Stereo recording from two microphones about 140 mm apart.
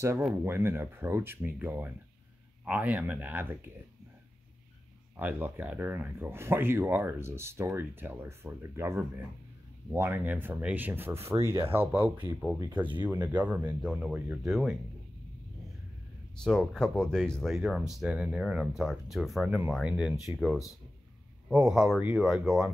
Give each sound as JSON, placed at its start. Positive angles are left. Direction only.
{"t": 0.3, "sound": "speech", "side_deg": -15}
{"t": 5.1, "sound": "speech", "side_deg": -15}
{"t": 16.4, "sound": "speech", "side_deg": 5}